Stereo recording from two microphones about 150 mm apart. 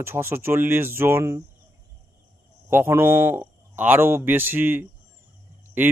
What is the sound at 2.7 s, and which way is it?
A man's voice, 15° right (ahead or behind).